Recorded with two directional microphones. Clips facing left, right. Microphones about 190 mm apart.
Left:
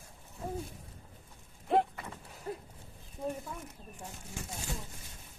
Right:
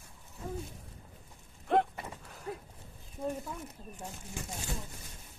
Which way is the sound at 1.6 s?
5° left (ahead or behind).